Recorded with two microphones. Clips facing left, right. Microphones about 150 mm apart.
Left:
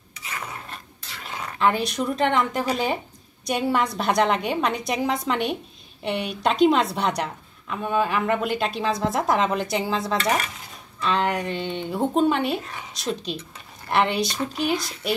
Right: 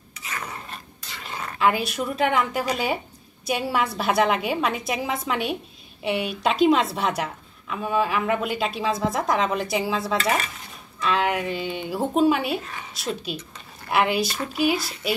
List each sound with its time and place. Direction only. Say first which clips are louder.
1.1 s speech: even; 5° left (ahead or behind)